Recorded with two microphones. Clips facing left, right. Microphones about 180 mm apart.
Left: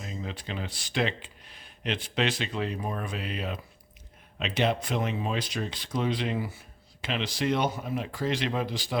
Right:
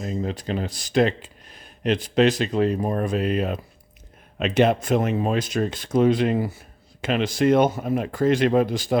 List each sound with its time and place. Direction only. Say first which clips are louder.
0.0 s speech: right 10 dB; 45° right (ahead or behind)